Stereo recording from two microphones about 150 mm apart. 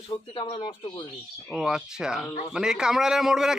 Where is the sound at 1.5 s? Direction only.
Centre (ahead or behind).